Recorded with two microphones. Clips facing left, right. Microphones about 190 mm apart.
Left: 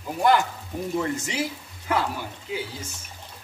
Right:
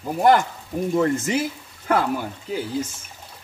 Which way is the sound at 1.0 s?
50° right (ahead or behind).